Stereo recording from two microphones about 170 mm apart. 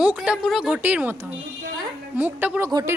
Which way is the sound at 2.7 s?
25° right (ahead or behind).